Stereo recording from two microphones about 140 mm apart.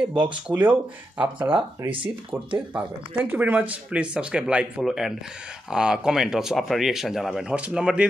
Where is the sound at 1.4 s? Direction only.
40° right (ahead or behind).